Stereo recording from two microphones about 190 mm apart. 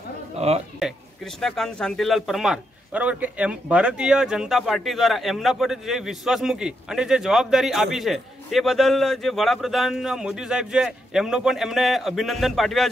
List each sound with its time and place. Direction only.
0.4 s speech: 35° right (ahead or behind)
0.7 s speech: centre (ahead or behind)